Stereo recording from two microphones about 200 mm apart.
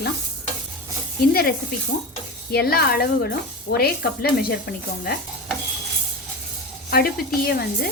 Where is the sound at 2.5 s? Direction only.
50° left (ahead or behind).